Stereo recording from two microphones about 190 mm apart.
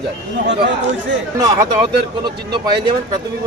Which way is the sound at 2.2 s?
25° right (ahead or behind).